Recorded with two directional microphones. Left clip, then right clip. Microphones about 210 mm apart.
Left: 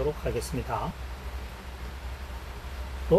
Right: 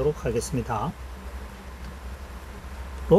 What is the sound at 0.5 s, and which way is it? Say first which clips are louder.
Speech: right 4 dB; 60° right (ahead or behind).